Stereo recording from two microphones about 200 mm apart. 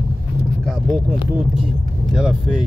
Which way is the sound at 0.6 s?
Centre (ahead or behind).